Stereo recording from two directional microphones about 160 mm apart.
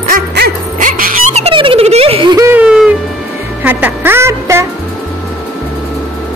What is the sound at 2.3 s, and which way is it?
Whimper, 20° right (ahead or behind).